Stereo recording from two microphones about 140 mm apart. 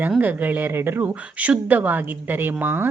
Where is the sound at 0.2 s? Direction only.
10° right (ahead or behind).